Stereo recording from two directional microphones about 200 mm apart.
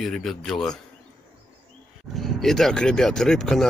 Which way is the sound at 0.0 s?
Centre (ahead or behind).